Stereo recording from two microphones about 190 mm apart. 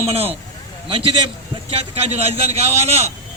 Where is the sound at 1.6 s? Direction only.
30° right (ahead or behind).